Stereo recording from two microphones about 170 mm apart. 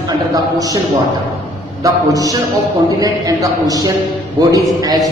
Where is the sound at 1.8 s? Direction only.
20° right (ahead or behind).